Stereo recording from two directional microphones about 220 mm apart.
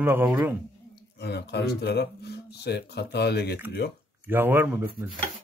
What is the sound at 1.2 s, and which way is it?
Speech, 50° left (ahead or behind).